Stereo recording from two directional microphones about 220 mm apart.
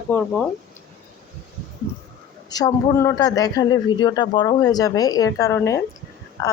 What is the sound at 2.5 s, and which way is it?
Speech, 15° left (ahead or behind).